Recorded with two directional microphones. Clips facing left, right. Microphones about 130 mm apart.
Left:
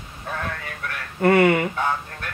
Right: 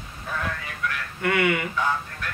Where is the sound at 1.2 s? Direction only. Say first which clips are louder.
Left 7 dB; 40° left (ahead or behind).